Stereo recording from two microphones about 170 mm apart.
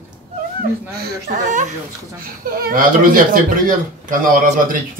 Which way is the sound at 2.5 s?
60° right (ahead or behind).